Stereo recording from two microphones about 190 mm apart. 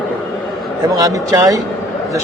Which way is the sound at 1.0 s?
20° right (ahead or behind).